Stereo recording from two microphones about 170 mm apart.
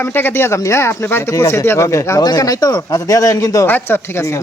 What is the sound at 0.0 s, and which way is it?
Speech, 10° left (ahead or behind).